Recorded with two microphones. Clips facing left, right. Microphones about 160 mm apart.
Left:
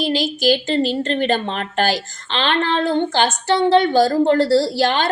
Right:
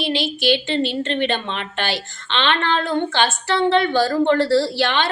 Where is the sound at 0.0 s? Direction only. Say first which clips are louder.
Left 3 dB; 40° left (ahead or behind).